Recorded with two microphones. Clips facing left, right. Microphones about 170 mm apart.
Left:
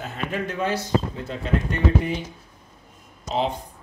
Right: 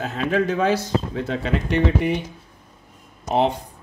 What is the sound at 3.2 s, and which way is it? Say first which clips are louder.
Speech: right 5 dB; 65° right (ahead or behind).